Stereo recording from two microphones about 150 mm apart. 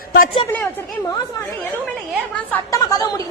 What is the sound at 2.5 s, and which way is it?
Speech, 20° left (ahead or behind).